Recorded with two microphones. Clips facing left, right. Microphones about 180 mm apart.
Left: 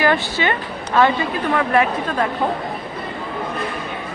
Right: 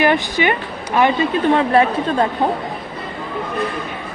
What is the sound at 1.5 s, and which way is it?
Speech, 30° right (ahead or behind).